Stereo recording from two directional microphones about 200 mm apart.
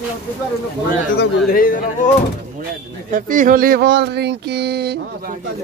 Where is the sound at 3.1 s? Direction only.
40° right (ahead or behind).